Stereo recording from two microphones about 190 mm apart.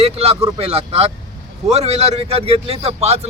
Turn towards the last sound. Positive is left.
turn(degrees=-35)  # may be behind; listen again after turning